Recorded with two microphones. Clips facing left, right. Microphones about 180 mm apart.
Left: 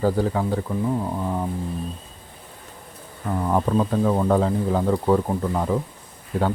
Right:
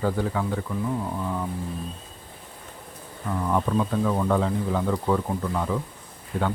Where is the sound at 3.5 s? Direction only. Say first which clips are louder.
Left 3 dB; 35° left (ahead or behind).